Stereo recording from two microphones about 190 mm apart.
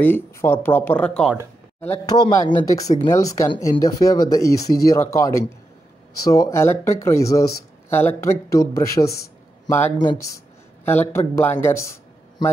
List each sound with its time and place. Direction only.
0.0 s speech: 10° left (ahead or behind)
2.0 s speech: 20° left (ahead or behind)